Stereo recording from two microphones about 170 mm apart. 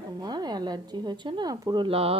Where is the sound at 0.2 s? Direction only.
25° right (ahead or behind).